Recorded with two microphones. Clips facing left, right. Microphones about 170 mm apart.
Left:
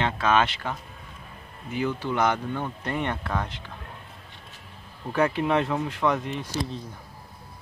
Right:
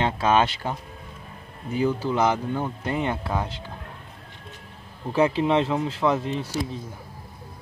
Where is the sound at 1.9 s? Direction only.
10° right (ahead or behind).